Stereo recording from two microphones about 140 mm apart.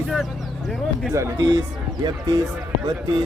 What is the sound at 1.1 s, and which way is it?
Speech, 20° right (ahead or behind).